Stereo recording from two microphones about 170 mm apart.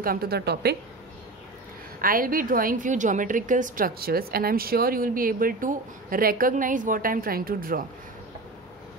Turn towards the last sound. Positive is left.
turn(degrees=-55)  # may be behind; listen again after turning